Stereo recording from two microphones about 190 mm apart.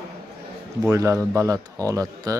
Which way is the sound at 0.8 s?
15° right (ahead or behind).